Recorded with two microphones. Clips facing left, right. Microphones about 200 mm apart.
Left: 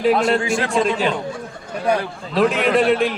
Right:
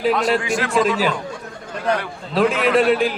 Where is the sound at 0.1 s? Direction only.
30° left (ahead or behind).